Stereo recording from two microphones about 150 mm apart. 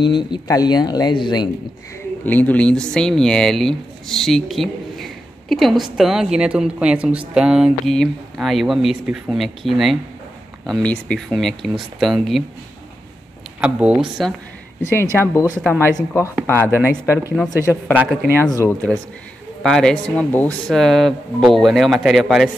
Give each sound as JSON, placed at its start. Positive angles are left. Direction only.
{"t": 0.0, "sound": "speech", "side_deg": 30}
{"t": 2.2, "sound": "speech", "side_deg": 10}
{"t": 13.6, "sound": "speech", "side_deg": -5}
{"t": 15.1, "sound": "speech", "side_deg": 20}
{"t": 15.6, "sound": "speech", "side_deg": 10}
{"t": 17.9, "sound": "speech", "side_deg": -10}
{"t": 18.7, "sound": "speech", "side_deg": 5}